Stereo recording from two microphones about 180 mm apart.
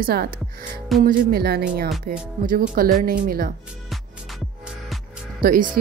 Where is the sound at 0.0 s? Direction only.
55° right (ahead or behind).